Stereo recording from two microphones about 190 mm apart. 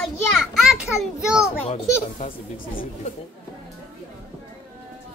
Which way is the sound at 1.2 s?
5° right (ahead or behind).